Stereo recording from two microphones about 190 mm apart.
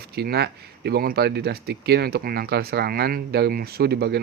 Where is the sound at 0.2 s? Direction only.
60° right (ahead or behind).